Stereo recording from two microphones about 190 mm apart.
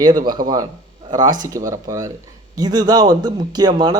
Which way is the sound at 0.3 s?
20° right (ahead or behind).